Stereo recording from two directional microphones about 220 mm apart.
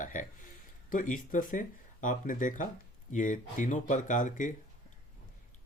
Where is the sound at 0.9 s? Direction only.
35° left (ahead or behind).